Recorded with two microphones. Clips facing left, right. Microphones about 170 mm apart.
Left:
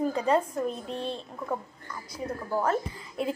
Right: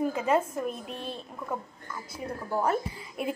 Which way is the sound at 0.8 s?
25° left (ahead or behind).